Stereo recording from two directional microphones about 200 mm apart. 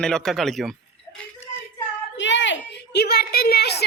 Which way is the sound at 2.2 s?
65° left (ahead or behind).